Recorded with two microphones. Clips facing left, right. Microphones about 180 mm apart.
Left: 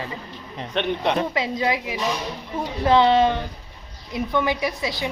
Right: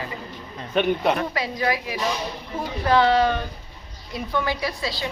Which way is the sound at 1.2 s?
20° left (ahead or behind).